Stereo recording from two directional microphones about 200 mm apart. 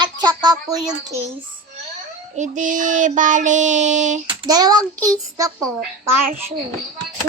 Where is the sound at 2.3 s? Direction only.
40° right (ahead or behind).